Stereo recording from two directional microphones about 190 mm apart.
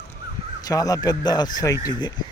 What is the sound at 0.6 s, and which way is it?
Speech, 20° left (ahead or behind).